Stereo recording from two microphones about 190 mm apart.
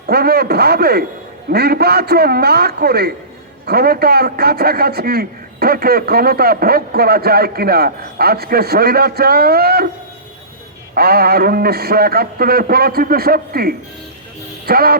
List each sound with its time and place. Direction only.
0.1 s a man's voice: 55° right (ahead or behind)
10.9 s a man's voice: 55° right (ahead or behind)